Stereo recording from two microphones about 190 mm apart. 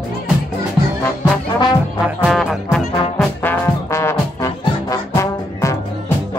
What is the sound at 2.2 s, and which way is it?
Music, centre (ahead or behind).